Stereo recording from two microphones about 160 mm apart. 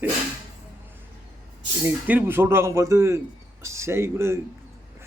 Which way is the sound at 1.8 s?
10° right (ahead or behind).